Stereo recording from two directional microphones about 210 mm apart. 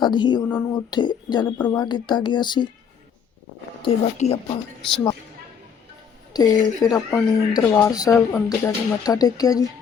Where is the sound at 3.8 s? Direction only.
30° left (ahead or behind).